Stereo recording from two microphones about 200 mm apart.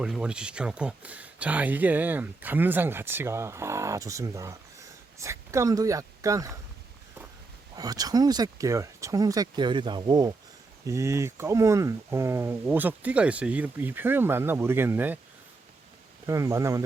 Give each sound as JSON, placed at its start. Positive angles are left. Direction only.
{"t": 0.0, "sound": "speech", "side_deg": -5}
{"t": 7.8, "sound": "speech", "side_deg": -20}
{"t": 16.2, "sound": "speech", "side_deg": -15}